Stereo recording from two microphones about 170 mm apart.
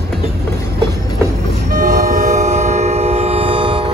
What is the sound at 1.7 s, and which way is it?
Train, 60° right (ahead or behind).